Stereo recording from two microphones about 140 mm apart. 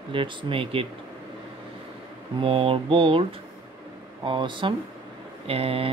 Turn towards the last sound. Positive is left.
turn(degrees=-45)  # may be behind; listen again after turning